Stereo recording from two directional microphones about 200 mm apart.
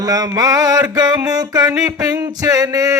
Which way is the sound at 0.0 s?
20° right (ahead or behind).